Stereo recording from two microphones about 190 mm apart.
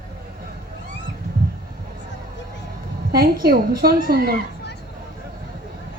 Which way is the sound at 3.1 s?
50° right (ahead or behind).